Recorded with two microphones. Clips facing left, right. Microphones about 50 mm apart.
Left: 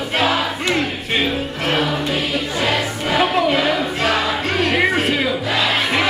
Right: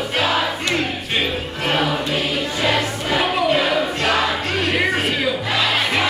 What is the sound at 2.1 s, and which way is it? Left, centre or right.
Choir, centre.